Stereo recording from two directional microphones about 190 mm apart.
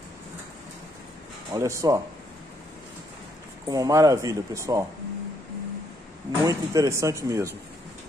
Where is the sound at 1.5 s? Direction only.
15° right (ahead or behind).